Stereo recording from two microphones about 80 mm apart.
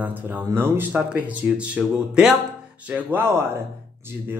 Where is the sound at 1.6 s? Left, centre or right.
Centre.